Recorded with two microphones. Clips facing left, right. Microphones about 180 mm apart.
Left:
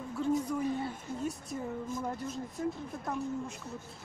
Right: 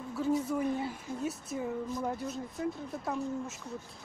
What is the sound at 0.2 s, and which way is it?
Speech, 5° right (ahead or behind).